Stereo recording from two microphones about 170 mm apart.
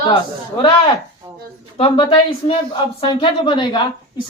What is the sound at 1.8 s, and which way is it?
Speech, 30° left (ahead or behind).